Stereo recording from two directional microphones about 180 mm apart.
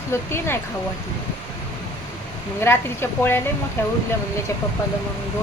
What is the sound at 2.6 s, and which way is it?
Speech, 15° left (ahead or behind).